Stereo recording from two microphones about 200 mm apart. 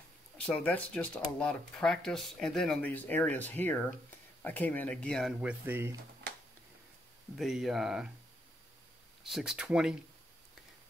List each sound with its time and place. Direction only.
0.5 s speech: 5° left (ahead or behind); by 5.9 s 10° right (ahead or behind)
7.3 s speech: centre (ahead or behind)
9.2 s speech: 5° right (ahead or behind)